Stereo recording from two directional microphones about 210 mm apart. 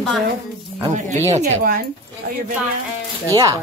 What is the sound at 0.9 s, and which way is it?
Speech, 30° right (ahead or behind).